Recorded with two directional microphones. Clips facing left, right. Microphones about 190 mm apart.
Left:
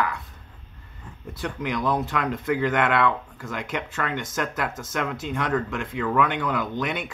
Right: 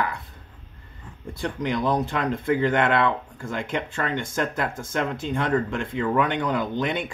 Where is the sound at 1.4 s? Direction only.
30° right (ahead or behind).